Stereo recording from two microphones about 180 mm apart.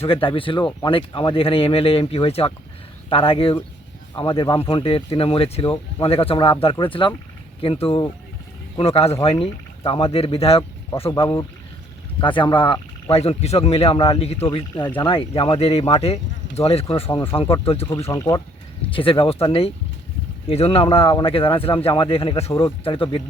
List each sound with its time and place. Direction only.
0.0 s speech: 30° left (ahead or behind)
11.1 s speech: 20° left (ahead or behind)
18.1 s speech: 20° left (ahead or behind)
18.9 s speech: 30° left (ahead or behind)